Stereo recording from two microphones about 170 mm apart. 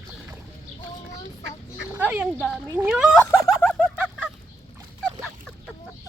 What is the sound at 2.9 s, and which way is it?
Speech, centre (ahead or behind).